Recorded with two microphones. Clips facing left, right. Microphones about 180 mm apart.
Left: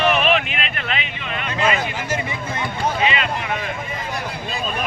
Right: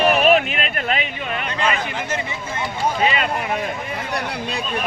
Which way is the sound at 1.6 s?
10° left (ahead or behind).